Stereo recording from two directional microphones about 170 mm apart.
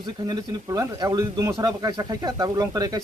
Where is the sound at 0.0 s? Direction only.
25° right (ahead or behind).